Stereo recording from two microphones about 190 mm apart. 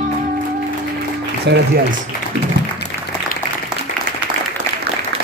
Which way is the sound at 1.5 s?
65° right (ahead or behind).